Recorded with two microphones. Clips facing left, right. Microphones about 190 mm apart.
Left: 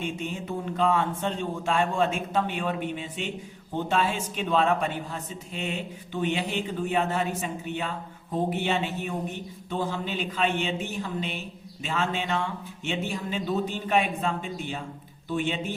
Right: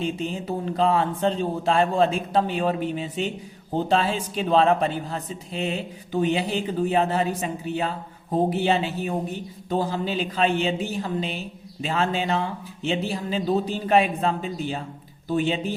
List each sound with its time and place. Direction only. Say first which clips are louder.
0.0 s speech: right 5 dB; 35° right (ahead or behind)